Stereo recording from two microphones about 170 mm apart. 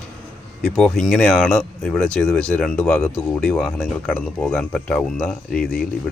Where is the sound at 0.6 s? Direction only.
5° left (ahead or behind).